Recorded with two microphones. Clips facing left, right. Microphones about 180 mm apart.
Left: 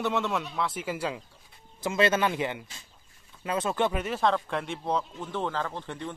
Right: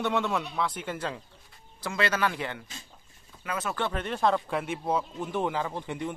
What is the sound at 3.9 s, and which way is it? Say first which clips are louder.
Speech: even; 5° left (ahead or behind).